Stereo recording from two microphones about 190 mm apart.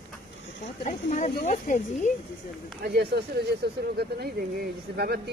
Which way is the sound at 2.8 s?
60° right (ahead or behind).